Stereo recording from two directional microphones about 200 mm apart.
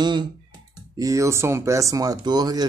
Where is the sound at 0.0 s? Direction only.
20° right (ahead or behind).